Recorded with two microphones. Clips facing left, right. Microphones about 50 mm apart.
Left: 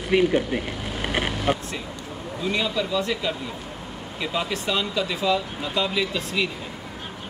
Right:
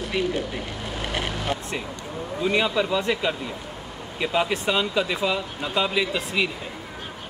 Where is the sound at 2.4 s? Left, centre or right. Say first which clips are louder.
Right 3 dB; right.